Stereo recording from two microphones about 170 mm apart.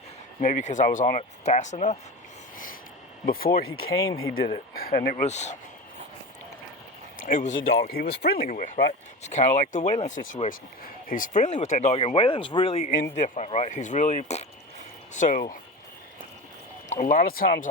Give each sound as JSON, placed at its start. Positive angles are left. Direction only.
{"t": 0.4, "sound": "speech", "side_deg": 45}
{"t": 3.2, "sound": "speech", "side_deg": 60}
{"t": 5.2, "sound": "speech", "side_deg": 40}
{"t": 7.2, "sound": "speech", "side_deg": 50}
{"t": 7.5, "sound": "speech", "side_deg": 75}
{"t": 16.9, "sound": "speech", "side_deg": 50}